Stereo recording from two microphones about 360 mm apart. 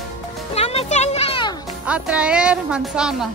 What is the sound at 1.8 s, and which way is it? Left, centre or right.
A woman's voice, centre.